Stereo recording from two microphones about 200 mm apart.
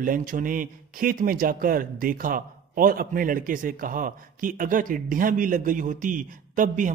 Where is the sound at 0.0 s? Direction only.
45° right (ahead or behind).